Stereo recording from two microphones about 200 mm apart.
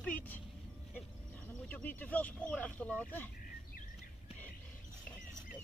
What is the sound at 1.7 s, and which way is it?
Speech, 10° left (ahead or behind).